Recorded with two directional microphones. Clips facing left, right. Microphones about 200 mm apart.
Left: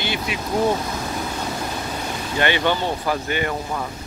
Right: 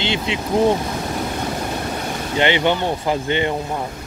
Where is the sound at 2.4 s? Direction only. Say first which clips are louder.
Right 3 dB; 20° right (ahead or behind).